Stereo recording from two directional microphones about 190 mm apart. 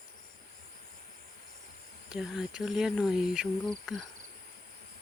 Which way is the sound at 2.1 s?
Centre (ahead or behind).